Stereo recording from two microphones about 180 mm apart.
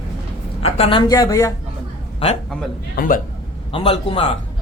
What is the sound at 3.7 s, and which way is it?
Speech, 30° left (ahead or behind).